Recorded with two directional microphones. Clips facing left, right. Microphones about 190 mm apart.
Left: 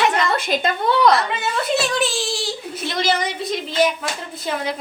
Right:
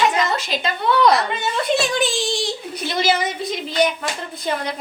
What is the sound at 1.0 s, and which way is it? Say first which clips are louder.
A child's voice: right 1 dB; centre (ahead or behind).